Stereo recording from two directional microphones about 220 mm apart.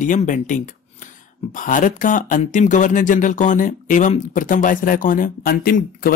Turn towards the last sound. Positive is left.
turn(degrees=40)  # may be behind; listen again after turning